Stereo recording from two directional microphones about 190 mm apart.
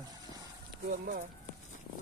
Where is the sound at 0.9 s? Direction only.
50° right (ahead or behind).